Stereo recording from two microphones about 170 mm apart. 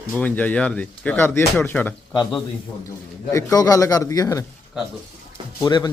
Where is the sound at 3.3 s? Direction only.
20° left (ahead or behind).